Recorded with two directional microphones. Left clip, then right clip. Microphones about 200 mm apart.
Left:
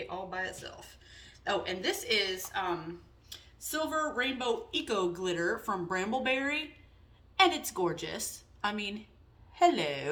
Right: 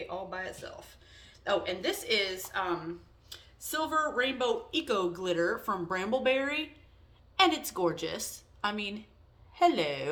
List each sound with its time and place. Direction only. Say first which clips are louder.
0.1 s a woman's voice: left 1 dB; 20° right (ahead or behind)